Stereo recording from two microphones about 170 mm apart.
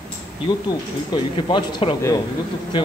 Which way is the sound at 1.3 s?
25° left (ahead or behind).